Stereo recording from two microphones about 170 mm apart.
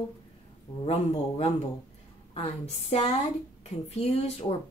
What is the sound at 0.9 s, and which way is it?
Speech, 35° left (ahead or behind).